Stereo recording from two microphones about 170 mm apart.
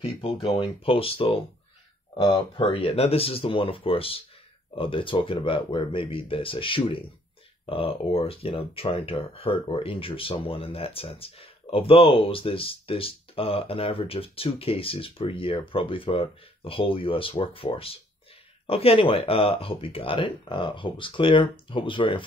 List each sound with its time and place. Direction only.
0.6 s speech: 35° left (ahead or behind)